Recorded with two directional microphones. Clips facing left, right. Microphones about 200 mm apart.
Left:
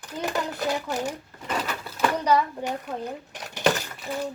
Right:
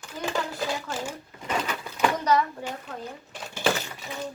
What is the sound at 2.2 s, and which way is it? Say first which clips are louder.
Speech: left 1 dB; 15° left (ahead or behind).